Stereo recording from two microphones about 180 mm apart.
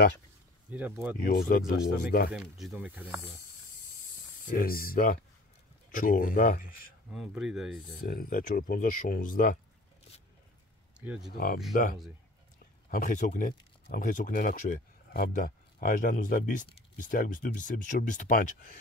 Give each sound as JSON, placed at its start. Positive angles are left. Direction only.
{"t": 0.7, "sound": "speech", "side_deg": -10}
{"t": 1.2, "sound": "speech", "side_deg": 55}
{"t": 2.3, "sound": "speech", "side_deg": 0}
{"t": 4.5, "sound": "speech", "side_deg": 55}
{"t": 7.1, "sound": "speech", "side_deg": -5}
{"t": 8.0, "sound": "speech", "side_deg": 55}
{"t": 11.0, "sound": "speech", "side_deg": -5}
{"t": 11.3, "sound": "speech", "side_deg": 55}